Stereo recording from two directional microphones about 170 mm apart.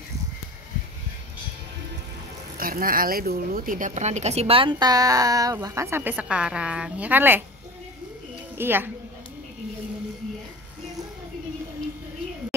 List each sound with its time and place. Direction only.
2.5 s speech: 55° right (ahead or behind); by 7.4 s 10° right (ahead or behind)
8.5 s a woman's voice: 10° right (ahead or behind)